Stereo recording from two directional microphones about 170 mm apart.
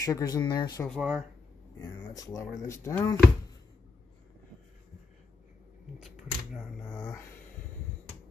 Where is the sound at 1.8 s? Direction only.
20° left (ahead or behind).